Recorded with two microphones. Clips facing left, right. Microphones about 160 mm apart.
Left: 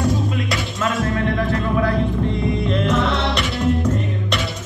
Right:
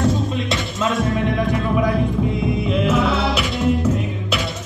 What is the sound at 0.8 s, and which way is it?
Music, centre (ahead or behind).